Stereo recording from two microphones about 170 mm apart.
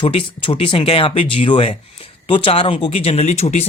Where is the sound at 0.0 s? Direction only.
30° left (ahead or behind).